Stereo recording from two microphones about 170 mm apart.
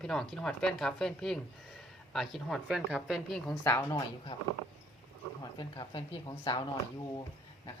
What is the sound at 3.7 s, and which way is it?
Speech, 25° left (ahead or behind).